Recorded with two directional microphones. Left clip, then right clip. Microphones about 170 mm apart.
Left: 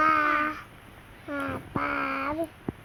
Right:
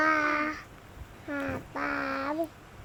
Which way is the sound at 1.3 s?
20° right (ahead or behind).